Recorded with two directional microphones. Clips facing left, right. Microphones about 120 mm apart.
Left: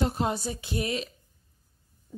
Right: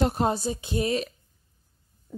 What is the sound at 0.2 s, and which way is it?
Music, 30° right (ahead or behind).